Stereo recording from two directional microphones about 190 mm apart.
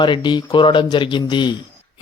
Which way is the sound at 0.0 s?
25° left (ahead or behind).